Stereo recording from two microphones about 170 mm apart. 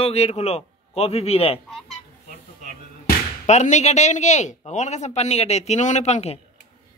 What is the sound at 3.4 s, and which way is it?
Speech, 45° left (ahead or behind).